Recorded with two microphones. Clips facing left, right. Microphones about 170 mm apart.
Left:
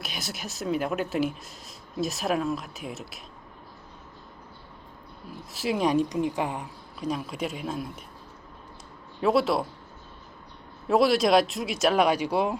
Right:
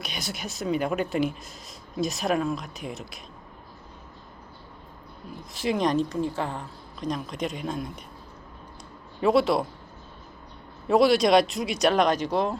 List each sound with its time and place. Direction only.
0.0 s speech: centre (ahead or behind)
5.3 s speech: 5° left (ahead or behind)
9.2 s speech: centre (ahead or behind)
10.8 s speech: centre (ahead or behind)